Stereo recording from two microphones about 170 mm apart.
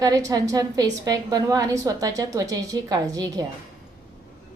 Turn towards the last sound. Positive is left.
turn(degrees=-25)  # may be behind; listen again after turning